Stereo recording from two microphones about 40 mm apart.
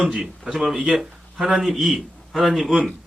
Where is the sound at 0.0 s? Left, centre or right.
Centre.